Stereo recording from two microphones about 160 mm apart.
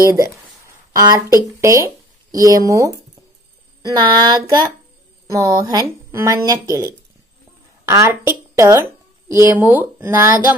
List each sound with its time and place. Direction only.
0.0 s a woman's voice: 20° right (ahead or behind)
3.9 s a woman's voice: 25° right (ahead or behind)
7.8 s speech: 20° right (ahead or behind)